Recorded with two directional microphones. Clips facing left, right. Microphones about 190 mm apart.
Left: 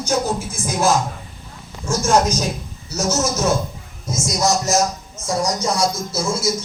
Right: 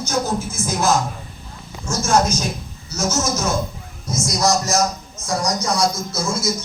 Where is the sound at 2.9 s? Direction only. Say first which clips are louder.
Left 1 dB; 35° left (ahead or behind).